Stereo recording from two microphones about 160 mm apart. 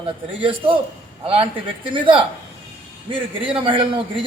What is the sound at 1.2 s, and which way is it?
A man's voice, 35° right (ahead or behind).